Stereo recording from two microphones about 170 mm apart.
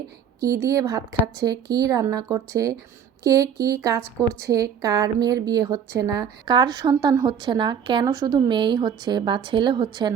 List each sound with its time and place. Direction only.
0.3 s a woman's voice: 20° right (ahead or behind)